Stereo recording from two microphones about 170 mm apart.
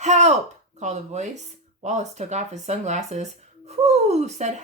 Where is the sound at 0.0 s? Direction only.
40° right (ahead or behind).